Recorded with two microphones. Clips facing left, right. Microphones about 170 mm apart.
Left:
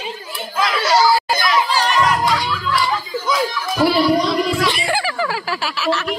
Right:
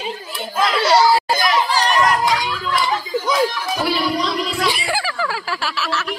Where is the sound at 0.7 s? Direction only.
30° right (ahead or behind).